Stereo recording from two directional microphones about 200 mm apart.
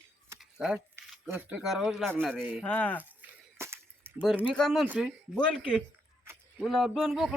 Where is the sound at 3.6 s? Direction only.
15° right (ahead or behind).